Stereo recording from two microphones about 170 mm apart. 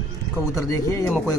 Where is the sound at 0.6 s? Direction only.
15° left (ahead or behind).